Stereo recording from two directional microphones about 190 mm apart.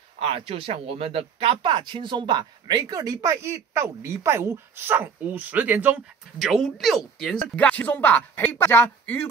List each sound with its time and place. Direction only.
0.2 s speech: 30° right (ahead or behind); by 9.3 s 10° left (ahead or behind)